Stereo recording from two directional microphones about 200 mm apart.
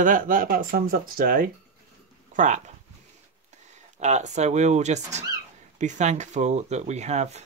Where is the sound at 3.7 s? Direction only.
35° right (ahead or behind).